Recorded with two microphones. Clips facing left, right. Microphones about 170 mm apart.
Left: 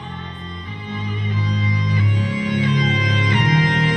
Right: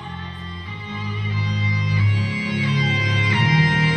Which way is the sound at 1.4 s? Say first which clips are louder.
Left 3 dB; 30° right (ahead or behind).